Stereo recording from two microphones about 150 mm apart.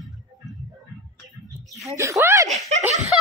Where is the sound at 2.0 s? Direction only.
20° right (ahead or behind).